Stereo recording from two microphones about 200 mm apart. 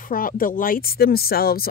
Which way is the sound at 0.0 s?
45° left (ahead or behind).